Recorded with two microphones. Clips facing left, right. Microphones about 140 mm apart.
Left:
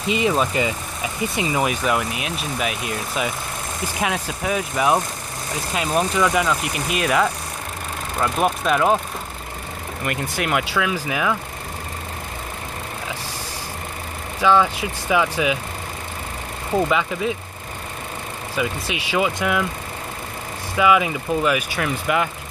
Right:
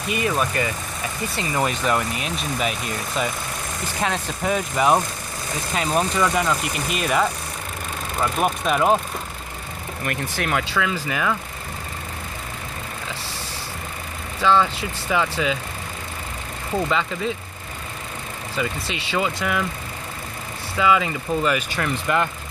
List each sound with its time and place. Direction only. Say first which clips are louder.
0.1 s speech: left 3 dB; 20° left (ahead or behind); by 8.9 s centre (ahead or behind)
10.0 s speech: left 2 dB; 10° left (ahead or behind)
14.4 s speech: left 2 dB; 10° left (ahead or behind)
16.7 s speech: left 3 dB; 10° left (ahead or behind)
18.6 s speech: left 2 dB; 10° left (ahead or behind)
20.7 s speech: left 2 dB; 10° left (ahead or behind)